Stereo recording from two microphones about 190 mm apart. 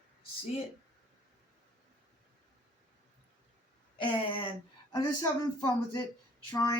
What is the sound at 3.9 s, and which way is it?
Speech, 25° left (ahead or behind).